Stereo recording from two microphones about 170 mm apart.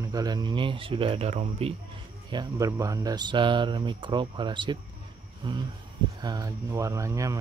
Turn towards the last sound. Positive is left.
turn(degrees=-20)  # may be behind; listen again after turning